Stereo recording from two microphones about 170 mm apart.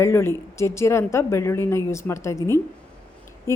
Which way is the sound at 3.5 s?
15° left (ahead or behind).